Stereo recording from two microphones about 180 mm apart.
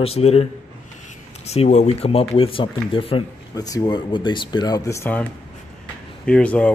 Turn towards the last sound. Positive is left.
turn(degrees=5)  # may be behind; listen again after turning